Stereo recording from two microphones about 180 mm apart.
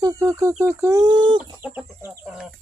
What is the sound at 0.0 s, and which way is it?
Speech, 20° right (ahead or behind).